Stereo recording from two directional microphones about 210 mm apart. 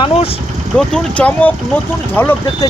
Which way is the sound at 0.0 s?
25° left (ahead or behind).